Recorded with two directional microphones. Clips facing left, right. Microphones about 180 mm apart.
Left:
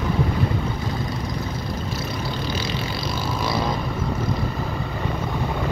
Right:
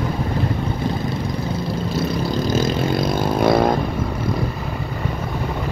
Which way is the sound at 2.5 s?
50° right (ahead or behind).